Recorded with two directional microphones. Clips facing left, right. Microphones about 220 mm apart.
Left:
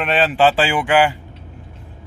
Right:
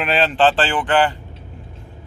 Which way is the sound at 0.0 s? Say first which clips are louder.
Left 1 dB; centre (ahead or behind).